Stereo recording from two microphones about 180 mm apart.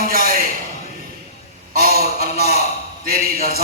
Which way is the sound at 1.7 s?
55° right (ahead or behind).